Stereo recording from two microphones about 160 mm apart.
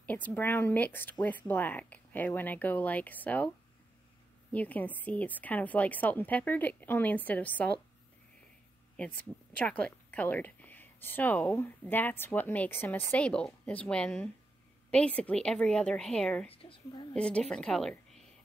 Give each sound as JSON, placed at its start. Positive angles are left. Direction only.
{"t": 0.0, "sound": "speech", "side_deg": 10}
{"t": 9.2, "sound": "a woman's voice", "side_deg": 5}
{"t": 16.4, "sound": "speech", "side_deg": 35}
{"t": 17.1, "sound": "a woman's voice", "side_deg": 5}